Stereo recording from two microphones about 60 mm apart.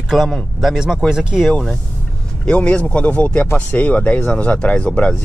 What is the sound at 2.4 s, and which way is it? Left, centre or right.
Speech, centre.